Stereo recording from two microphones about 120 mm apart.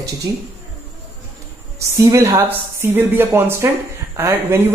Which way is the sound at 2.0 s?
25° right (ahead or behind).